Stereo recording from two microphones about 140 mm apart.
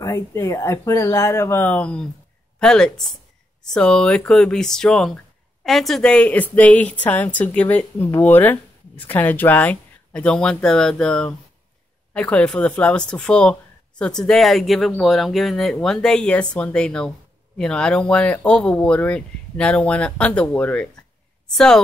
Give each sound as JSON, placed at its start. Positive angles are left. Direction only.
{"t": 0.0, "sound": "speech", "side_deg": 20}